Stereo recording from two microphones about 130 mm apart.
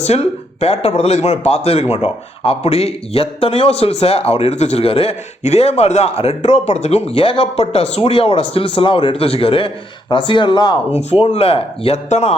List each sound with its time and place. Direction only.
0.0 s speech: 55° left (ahead or behind); by 10.8 s 35° left (ahead or behind)
10.9 s speech: 50° left (ahead or behind)